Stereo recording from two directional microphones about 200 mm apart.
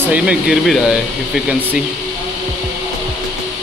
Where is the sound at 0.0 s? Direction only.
5° right (ahead or behind).